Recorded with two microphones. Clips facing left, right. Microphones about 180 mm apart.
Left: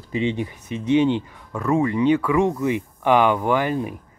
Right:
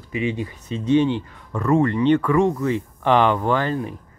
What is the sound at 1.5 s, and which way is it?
Speech, 5° left (ahead or behind).